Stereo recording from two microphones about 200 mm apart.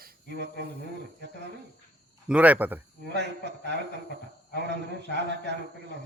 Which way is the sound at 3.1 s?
60° right (ahead or behind).